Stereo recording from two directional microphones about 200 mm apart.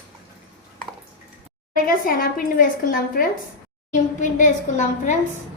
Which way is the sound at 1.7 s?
45° left (ahead or behind).